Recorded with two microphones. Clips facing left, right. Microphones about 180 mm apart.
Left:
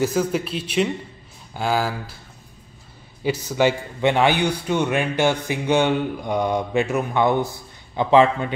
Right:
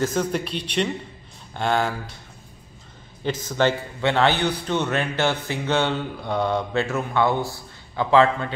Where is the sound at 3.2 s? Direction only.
10° left (ahead or behind).